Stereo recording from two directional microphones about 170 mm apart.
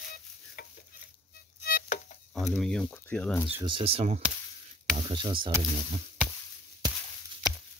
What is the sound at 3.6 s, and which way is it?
Speech, 30° right (ahead or behind).